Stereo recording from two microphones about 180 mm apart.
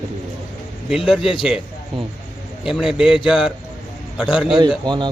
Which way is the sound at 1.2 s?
30° left (ahead or behind).